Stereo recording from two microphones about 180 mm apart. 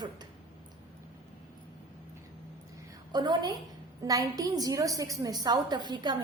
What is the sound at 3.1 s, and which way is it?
A woman's voice, 20° right (ahead or behind).